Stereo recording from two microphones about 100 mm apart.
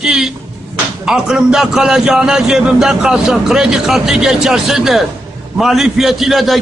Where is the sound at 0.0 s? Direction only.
5° right (ahead or behind).